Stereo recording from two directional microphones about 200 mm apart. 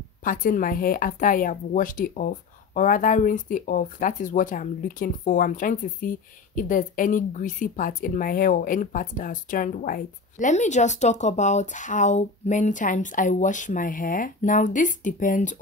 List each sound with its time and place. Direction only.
0.2 s speech: 45° left (ahead or behind)